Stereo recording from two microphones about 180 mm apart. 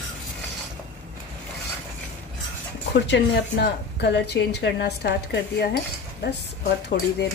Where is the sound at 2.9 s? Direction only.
75° left (ahead or behind).